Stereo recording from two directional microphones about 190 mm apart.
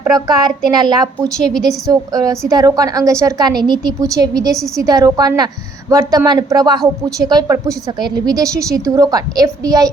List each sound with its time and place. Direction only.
0.1 s a woman's voice: 20° right (ahead or behind)
1.5 s a woman's voice: 5° left (ahead or behind)
1.9 s a woman's voice: 20° right (ahead or behind)